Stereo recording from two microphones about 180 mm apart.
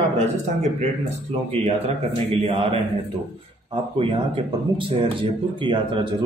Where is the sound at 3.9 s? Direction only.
30° right (ahead or behind).